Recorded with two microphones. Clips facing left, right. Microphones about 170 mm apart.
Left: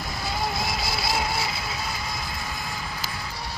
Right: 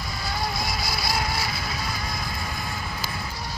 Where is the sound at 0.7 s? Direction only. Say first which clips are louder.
Left 1 dB; 25° left (ahead or behind).